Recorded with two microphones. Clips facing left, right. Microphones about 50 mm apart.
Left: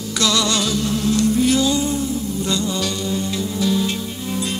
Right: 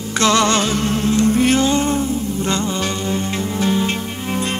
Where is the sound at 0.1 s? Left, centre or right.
Right.